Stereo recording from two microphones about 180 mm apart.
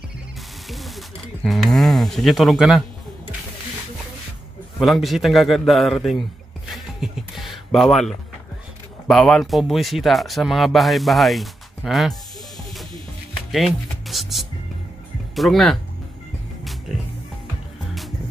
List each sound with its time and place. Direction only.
0.7 s a sound: centre (ahead or behind)
4.7 s speech: centre (ahead or behind)
6.7 s a sound: centre (ahead or behind)
9.0 s speech: 5° left (ahead or behind)
13.5 s music: centre (ahead or behind)
15.3 s speech: centre (ahead or behind)